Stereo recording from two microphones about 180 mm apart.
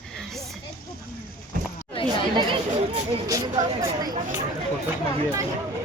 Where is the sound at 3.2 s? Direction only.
20° right (ahead or behind).